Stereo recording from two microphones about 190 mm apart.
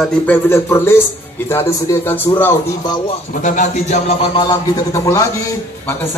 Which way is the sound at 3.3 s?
40° left (ahead or behind).